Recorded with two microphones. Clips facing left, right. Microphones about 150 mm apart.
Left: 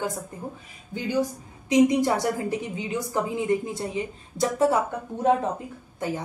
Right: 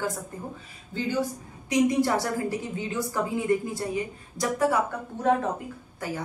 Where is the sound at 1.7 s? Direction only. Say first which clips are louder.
Left 3 dB; 20° left (ahead or behind).